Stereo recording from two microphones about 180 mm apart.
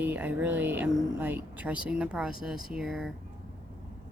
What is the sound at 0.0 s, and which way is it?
Speech, 10° right (ahead or behind).